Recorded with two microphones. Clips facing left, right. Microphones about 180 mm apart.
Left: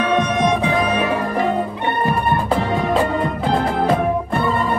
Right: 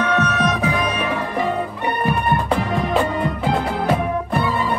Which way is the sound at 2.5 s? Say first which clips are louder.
Left 3 dB; 5° left (ahead or behind).